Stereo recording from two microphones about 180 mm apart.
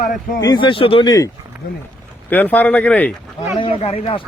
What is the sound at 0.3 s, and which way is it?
Speech, 20° left (ahead or behind).